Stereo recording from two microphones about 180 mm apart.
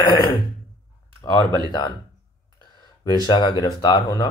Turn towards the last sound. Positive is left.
turn(degrees=25)  # may be behind; listen again after turning